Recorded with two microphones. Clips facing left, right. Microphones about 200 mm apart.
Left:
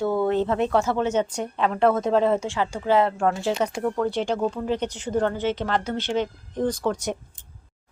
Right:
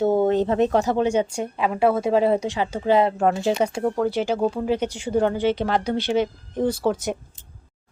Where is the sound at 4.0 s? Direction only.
5° right (ahead or behind).